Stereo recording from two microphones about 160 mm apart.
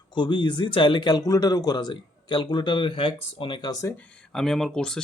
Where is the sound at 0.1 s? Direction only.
30° left (ahead or behind).